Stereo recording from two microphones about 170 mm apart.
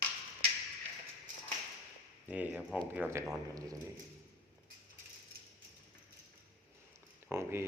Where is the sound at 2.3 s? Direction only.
10° right (ahead or behind).